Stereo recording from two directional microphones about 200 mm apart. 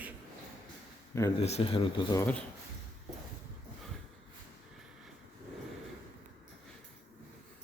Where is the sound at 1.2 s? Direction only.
15° left (ahead or behind).